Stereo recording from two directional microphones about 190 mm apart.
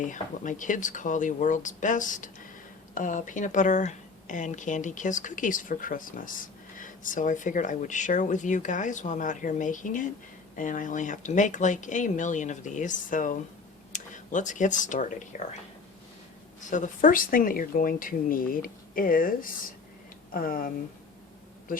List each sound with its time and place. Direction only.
0.0 s a woman's voice: 40° left (ahead or behind)
16.6 s speech: 40° left (ahead or behind)